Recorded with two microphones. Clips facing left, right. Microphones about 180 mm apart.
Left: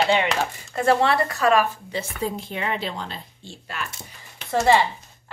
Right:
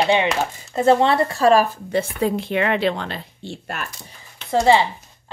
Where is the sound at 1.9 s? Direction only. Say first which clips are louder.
Right 9 dB; 70° right (ahead or behind); by 3.9 s 50° right (ahead or behind).